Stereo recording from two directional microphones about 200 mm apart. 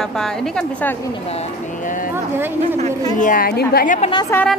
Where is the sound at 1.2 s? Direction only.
35° left (ahead or behind).